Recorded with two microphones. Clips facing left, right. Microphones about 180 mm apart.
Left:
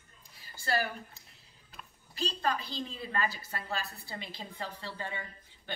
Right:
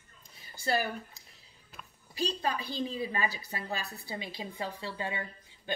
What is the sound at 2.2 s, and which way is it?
A woman's voice, 15° right (ahead or behind).